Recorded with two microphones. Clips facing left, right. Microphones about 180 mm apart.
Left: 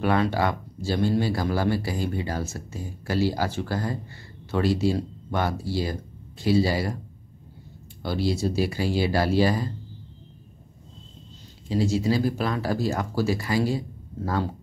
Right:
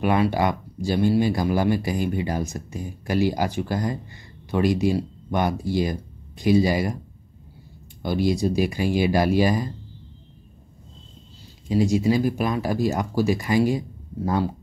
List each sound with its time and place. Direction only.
0.0 s speech: 15° right (ahead or behind)
8.0 s speech: 15° right (ahead or behind)
11.7 s speech: 15° right (ahead or behind)